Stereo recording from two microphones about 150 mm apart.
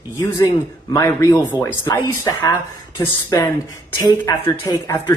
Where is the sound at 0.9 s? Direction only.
20° left (ahead or behind).